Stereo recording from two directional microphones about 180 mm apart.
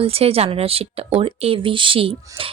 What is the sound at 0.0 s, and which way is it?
A woman's voice, 35° right (ahead or behind).